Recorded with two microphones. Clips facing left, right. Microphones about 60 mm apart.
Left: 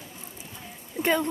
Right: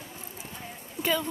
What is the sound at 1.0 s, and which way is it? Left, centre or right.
Speech, left.